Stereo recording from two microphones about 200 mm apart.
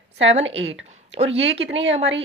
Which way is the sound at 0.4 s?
70° right (ahead or behind).